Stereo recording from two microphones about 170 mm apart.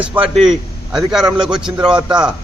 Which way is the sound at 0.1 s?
10° right (ahead or behind).